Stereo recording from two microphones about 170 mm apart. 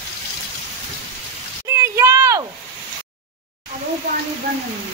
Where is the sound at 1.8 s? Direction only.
20° right (ahead or behind).